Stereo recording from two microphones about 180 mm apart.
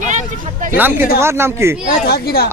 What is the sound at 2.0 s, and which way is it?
Speech, 60° left (ahead or behind).